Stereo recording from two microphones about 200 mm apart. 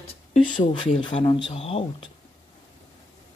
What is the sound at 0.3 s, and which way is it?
Speech, 25° left (ahead or behind).